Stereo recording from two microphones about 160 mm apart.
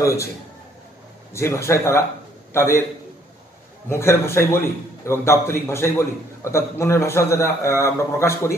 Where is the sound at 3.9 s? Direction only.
15° left (ahead or behind).